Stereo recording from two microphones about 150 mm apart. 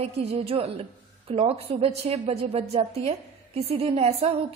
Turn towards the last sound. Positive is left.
turn(degrees=-40)  # may be behind; listen again after turning